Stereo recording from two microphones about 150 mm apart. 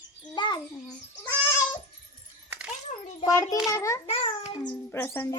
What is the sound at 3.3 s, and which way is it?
Speech, 20° left (ahead or behind).